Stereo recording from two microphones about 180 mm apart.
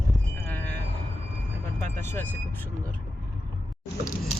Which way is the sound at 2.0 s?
10° left (ahead or behind).